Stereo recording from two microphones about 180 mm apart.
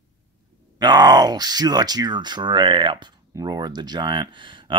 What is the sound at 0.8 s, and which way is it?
Speech, 25° right (ahead or behind).